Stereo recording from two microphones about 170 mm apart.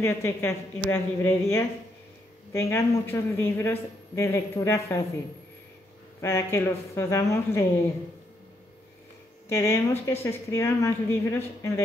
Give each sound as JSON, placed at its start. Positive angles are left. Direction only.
{"t": 0.0, "sound": "speech", "side_deg": 15}
{"t": 6.2, "sound": "speech", "side_deg": 15}
{"t": 9.5, "sound": "speech", "side_deg": 15}